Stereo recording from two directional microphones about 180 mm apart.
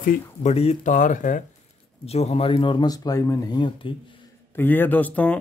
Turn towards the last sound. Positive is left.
turn(degrees=10)  # may be behind; listen again after turning